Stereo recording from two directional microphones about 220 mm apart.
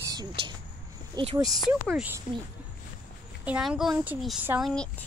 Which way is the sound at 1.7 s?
5° right (ahead or behind).